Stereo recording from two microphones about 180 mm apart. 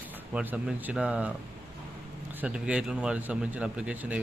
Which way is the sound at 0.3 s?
5° right (ahead or behind).